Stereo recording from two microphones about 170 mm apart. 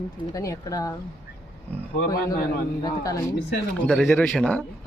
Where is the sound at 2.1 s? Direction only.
20° left (ahead or behind).